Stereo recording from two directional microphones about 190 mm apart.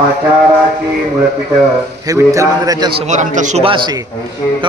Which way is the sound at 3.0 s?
40° right (ahead or behind).